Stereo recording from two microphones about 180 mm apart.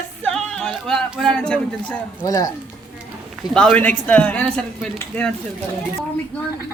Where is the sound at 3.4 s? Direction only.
5° left (ahead or behind).